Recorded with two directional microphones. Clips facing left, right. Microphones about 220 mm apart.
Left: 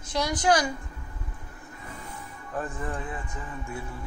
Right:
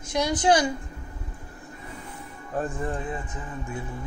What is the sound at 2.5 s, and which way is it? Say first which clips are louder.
Speech: right 4 dB; 30° right (ahead or behind).